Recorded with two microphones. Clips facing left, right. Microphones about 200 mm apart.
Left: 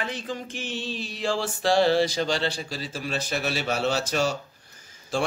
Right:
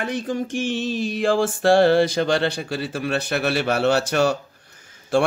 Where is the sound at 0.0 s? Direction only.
50° right (ahead or behind).